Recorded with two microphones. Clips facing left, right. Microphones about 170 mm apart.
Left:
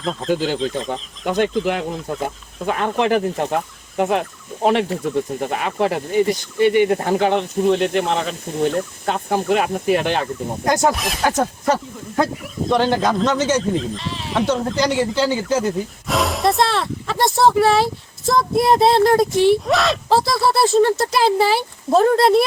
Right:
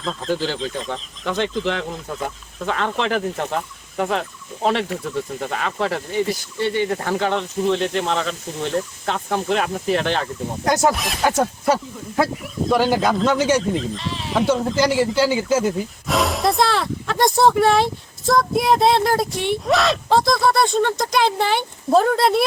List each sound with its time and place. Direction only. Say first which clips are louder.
0.0 s speech: left 3 dB; centre (ahead or behind)
0.3 s speech: left 3 dB; 10° left (ahead or behind)
1.5 s speech: left 3 dB; 10° left (ahead or behind)
10.8 s speech: even; centre (ahead or behind)